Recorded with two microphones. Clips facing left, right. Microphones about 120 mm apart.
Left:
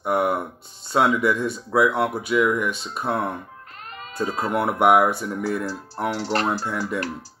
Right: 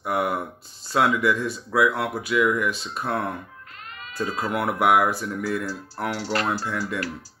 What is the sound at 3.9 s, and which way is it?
Sheep, 40° left (ahead or behind).